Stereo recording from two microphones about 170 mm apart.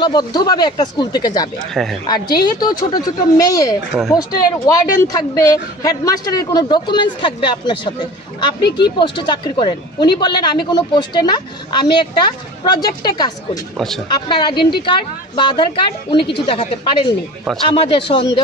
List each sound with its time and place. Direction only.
0.0 s a woman's voice: 25° left (ahead or behind)
1.7 s speech: centre (ahead or behind)
2.0 s a woman's voice: 25° left (ahead or behind)
13.7 s speech: centre (ahead or behind)
14.3 s a woman's voice: 25° left (ahead or behind)